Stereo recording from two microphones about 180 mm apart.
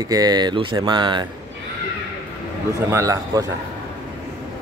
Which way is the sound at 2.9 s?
15° right (ahead or behind).